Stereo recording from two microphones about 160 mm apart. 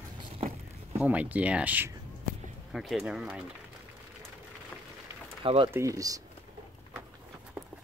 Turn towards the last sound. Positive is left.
turn(degrees=-20)  # may be behind; listen again after turning